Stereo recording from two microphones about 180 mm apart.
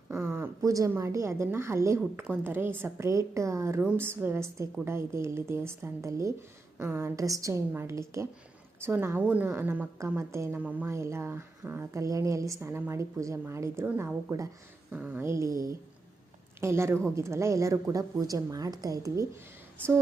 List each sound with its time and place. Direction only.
0.1 s a woman's voice: 15° right (ahead or behind)